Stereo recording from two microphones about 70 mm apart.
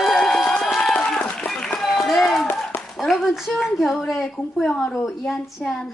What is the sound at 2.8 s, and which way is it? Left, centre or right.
A woman's voice, centre.